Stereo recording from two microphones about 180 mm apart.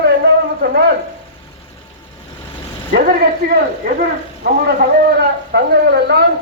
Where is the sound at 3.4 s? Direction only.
55° right (ahead or behind).